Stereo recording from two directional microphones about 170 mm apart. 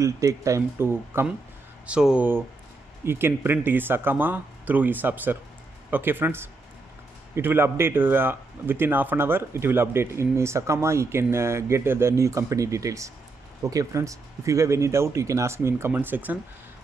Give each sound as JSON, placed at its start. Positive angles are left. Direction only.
{"t": 0.0, "sound": "a man's voice", "side_deg": -20}